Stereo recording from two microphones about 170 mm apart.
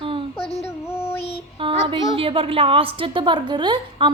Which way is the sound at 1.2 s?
35° left (ahead or behind).